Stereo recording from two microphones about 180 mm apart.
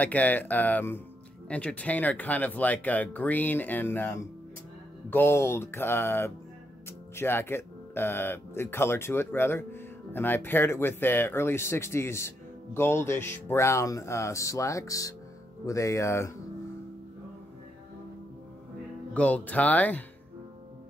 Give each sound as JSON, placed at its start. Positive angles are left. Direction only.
{"t": 0.0, "sound": "speech", "side_deg": 10}
{"t": 19.1, "sound": "speech", "side_deg": 5}